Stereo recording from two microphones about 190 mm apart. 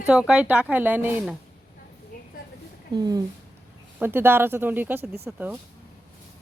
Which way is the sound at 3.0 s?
20° right (ahead or behind).